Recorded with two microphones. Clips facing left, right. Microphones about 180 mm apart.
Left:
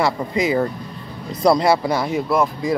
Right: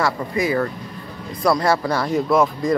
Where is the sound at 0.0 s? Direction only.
20° left (ahead or behind).